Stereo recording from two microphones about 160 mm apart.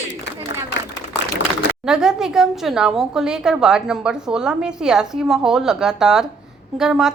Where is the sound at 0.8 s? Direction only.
90° left.